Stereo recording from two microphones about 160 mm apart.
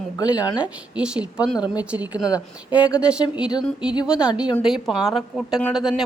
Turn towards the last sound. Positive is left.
turn(degrees=-5)  # may be behind; listen again after turning